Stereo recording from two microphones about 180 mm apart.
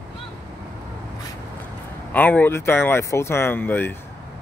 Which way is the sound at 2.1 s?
10° left (ahead or behind).